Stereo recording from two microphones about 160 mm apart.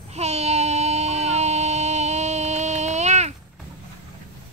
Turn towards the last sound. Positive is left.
turn(degrees=-45)  # may be behind; listen again after turning